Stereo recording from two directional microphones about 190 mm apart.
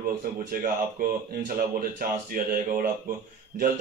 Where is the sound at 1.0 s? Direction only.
50° right (ahead or behind).